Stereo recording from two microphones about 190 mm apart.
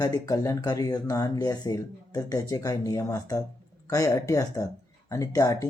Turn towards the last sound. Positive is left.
turn(degrees=15)  # may be behind; listen again after turning